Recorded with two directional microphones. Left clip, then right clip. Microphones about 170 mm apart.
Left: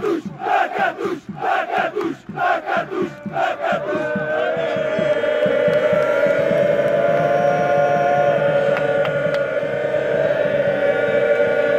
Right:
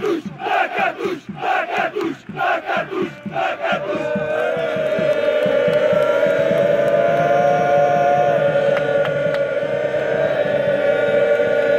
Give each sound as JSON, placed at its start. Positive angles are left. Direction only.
{"t": 5.1, "sound": "chant", "side_deg": 0}
{"t": 9.9, "sound": "choir", "side_deg": 0}